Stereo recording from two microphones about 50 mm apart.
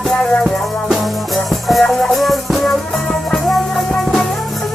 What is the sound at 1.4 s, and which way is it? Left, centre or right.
Music, centre.